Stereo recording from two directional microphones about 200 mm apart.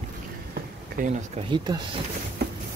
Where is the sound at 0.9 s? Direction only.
40° right (ahead or behind).